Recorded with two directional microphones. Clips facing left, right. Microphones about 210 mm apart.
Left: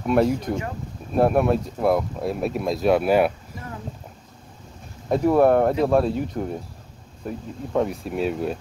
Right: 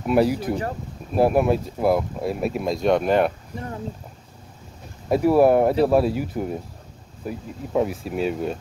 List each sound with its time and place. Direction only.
0.0 s speech: 5° right (ahead or behind)
5.1 s speech: 5° right (ahead or behind)